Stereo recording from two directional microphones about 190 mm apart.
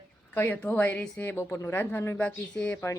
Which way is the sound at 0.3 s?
10° left (ahead or behind).